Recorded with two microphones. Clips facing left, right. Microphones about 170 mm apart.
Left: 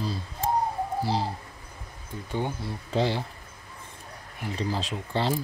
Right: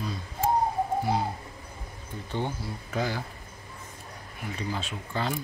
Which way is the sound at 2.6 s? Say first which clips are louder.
Left 4 dB; 25° left (ahead or behind).